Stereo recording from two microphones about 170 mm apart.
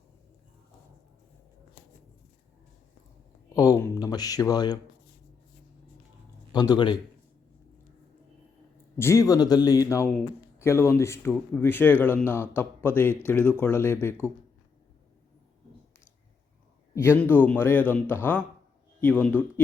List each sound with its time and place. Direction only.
3.5 s speech: 20° left (ahead or behind)
6.5 s speech: 25° left (ahead or behind)
9.0 s speech: 15° left (ahead or behind)
16.9 s speech: 15° left (ahead or behind)